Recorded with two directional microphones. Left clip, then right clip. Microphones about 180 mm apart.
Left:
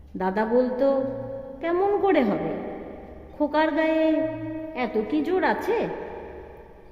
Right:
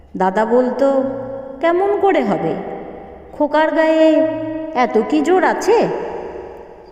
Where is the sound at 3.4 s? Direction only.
20° right (ahead or behind).